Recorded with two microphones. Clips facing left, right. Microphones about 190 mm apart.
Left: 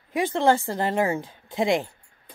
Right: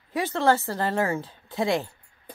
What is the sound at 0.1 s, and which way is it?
Speech, 15° left (ahead or behind).